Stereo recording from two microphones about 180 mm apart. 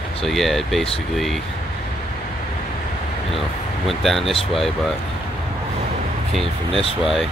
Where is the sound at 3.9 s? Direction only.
Centre (ahead or behind).